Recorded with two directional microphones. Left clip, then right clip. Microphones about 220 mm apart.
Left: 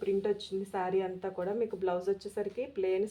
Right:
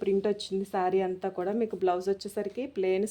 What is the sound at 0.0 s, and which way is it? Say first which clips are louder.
A woman's voice: right 3 dB; 50° right (ahead or behind).